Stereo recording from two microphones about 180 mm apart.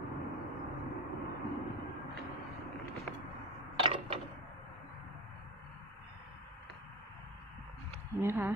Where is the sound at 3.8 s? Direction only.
30° right (ahead or behind).